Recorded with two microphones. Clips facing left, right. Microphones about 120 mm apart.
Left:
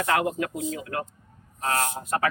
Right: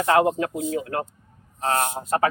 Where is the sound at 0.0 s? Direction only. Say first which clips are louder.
Right 5 dB; 30° right (ahead or behind).